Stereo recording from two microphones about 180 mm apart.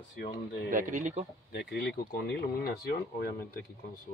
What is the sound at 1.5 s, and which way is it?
Speech, 65° left (ahead or behind).